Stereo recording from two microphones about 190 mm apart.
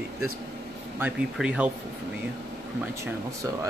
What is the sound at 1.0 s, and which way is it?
Speech, 5° right (ahead or behind).